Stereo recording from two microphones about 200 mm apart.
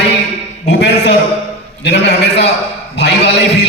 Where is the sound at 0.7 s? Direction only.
55° left (ahead or behind).